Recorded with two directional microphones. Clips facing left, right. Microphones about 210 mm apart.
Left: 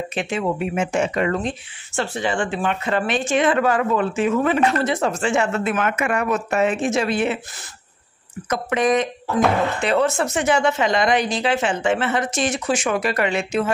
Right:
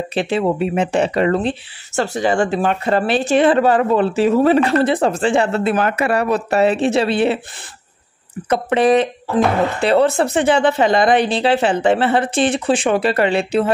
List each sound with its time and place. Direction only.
0.1 s speech: 35° right (ahead or behind)
8.5 s speech: 30° right (ahead or behind)